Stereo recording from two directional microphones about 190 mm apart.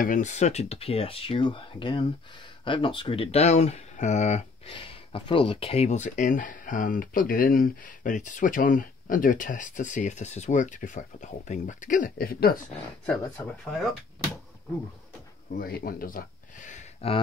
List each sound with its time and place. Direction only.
0.0 s speech: 40° left (ahead or behind)
13.4 s speech: 15° left (ahead or behind)
15.5 s speech: 50° left (ahead or behind); by 17.2 s 35° left (ahead or behind)